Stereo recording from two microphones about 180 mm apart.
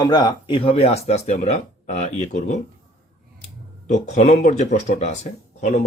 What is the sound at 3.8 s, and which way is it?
Speech, 40° left (ahead or behind).